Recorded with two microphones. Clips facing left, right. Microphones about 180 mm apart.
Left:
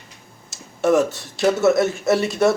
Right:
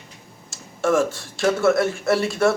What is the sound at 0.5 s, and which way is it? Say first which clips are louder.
A man's voice: left 3 dB; 20° left (ahead or behind).